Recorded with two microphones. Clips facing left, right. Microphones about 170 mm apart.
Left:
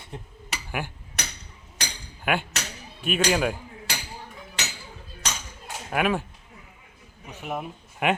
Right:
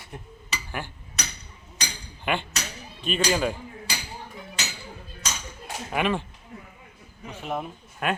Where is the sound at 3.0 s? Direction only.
5° left (ahead or behind).